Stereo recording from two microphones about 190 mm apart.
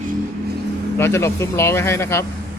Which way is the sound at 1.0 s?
15° left (ahead or behind).